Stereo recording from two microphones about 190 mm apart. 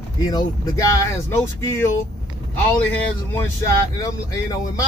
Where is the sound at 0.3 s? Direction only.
20° left (ahead or behind).